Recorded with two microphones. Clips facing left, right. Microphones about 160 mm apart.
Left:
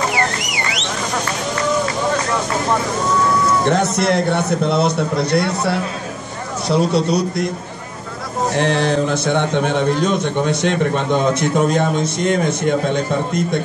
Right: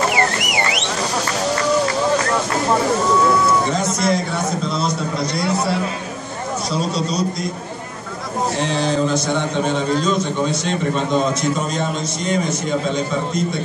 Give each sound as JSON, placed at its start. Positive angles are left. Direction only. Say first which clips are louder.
{"t": 3.6, "sound": "a man's voice", "louder": "left 3 dB", "side_deg": 65}
{"t": 6.7, "sound": "a man's voice", "louder": "left 8 dB", "side_deg": 60}
{"t": 8.5, "sound": "a man's voice", "louder": "left 4 dB", "side_deg": 60}